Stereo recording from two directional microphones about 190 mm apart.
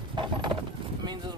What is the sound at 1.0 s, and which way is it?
Speech, 20° right (ahead or behind).